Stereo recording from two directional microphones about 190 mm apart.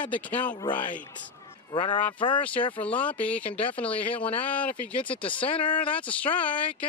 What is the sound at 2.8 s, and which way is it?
Speech, 5° left (ahead or behind).